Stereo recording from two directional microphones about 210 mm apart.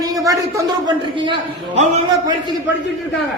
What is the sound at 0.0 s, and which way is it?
A man's voice, 15° right (ahead or behind).